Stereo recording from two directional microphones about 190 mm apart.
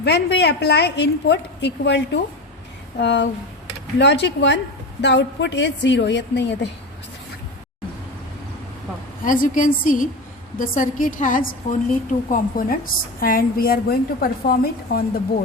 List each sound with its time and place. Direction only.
0.0 s a woman's voice: 60° left (ahead or behind)
9.2 s a woman's voice: 45° left (ahead or behind)